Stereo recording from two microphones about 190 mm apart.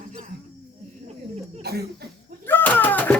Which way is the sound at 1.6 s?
55° right (ahead or behind).